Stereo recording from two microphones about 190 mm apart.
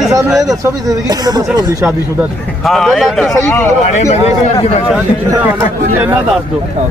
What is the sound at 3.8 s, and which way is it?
Speech, 40° left (ahead or behind).